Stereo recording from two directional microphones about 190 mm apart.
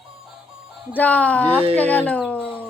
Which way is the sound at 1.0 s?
10° left (ahead or behind).